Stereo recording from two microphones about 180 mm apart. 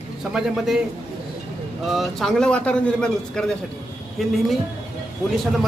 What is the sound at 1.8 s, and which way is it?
A man's voice, centre (ahead or behind).